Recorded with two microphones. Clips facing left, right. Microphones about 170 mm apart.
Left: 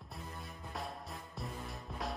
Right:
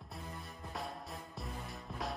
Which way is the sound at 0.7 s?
Centre (ahead or behind).